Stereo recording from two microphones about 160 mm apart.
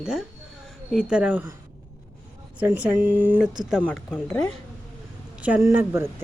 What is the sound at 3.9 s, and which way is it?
Speech, 15° left (ahead or behind).